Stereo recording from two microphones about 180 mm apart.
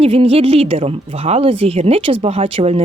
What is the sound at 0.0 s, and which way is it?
Speech, 30° right (ahead or behind).